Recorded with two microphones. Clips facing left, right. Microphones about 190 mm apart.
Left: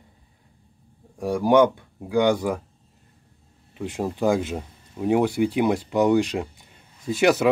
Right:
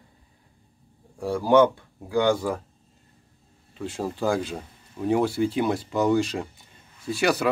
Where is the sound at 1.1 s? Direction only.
15° left (ahead or behind).